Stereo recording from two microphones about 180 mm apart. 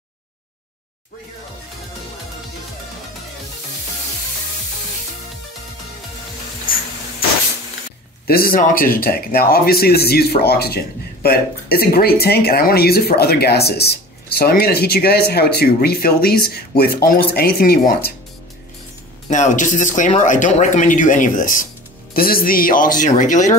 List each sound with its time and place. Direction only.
6.7 s a sound: 50° left (ahead or behind)
8.3 s speech: 55° left (ahead or behind)
19.2 s speech: 40° left (ahead or behind)